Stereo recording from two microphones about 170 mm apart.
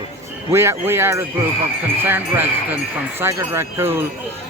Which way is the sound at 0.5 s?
15° right (ahead or behind).